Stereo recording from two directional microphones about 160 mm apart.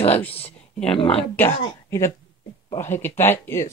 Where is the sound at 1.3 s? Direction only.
15° left (ahead or behind).